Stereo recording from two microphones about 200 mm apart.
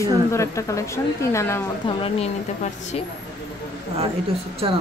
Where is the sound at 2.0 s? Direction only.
30° left (ahead or behind).